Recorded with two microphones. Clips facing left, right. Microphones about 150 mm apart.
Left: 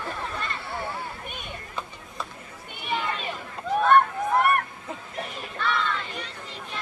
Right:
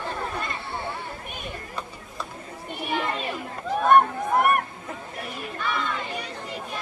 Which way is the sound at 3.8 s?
10° right (ahead or behind).